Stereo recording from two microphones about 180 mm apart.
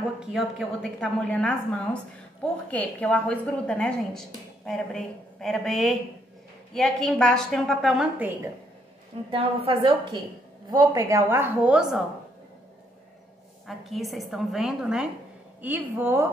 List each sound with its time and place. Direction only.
0.2 s a woman's voice: 5° right (ahead or behind)
9.3 s a woman's voice: 30° right (ahead or behind); by 12.0 s 5° right (ahead or behind)
13.7 s a woman's voice: centre (ahead or behind)